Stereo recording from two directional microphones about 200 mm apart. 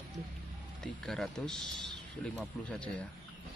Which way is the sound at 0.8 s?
Centre (ahead or behind).